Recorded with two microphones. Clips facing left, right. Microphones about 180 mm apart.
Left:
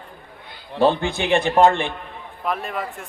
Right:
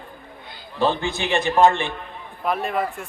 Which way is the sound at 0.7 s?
55° left (ahead or behind).